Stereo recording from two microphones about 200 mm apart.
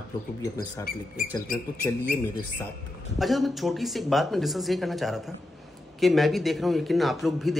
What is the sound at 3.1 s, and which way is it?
A man's voice, centre (ahead or behind).